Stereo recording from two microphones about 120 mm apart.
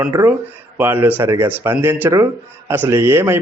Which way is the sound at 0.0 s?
20° right (ahead or behind).